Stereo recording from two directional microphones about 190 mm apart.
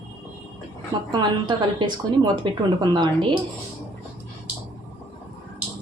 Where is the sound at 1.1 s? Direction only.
20° right (ahead or behind).